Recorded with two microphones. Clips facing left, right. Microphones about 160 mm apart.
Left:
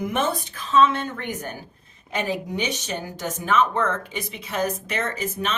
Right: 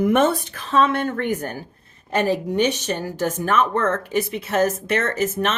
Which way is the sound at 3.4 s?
55° right (ahead or behind).